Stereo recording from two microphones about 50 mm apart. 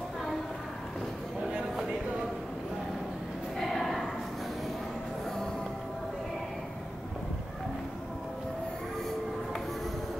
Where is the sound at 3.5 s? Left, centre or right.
Centre.